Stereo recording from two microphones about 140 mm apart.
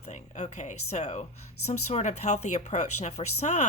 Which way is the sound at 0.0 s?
55° left (ahead or behind).